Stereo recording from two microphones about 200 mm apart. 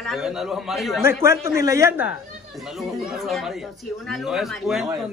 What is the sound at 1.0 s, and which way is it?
A man's voice, 15° right (ahead or behind).